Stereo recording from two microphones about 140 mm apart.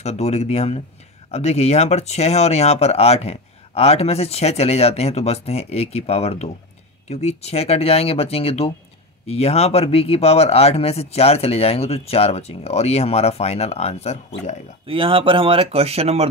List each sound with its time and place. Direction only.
0.0 s speech: 50° left (ahead or behind)
14.9 s speech: 40° right (ahead or behind)